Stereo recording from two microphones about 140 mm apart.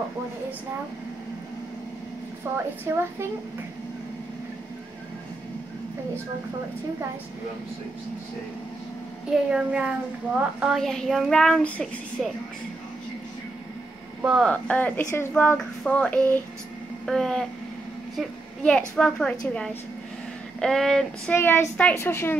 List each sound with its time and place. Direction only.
2.5 s a woman's voice: 15° right (ahead or behind)
9.3 s a woman's voice: 5° right (ahead or behind)
14.2 s a woman's voice: 5° right (ahead or behind)
14.5 s a woman's voice: 10° left (ahead or behind)
21.4 s speech: 15° left (ahead or behind)